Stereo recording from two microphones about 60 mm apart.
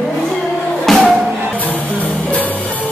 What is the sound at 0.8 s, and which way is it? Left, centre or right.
Music, centre.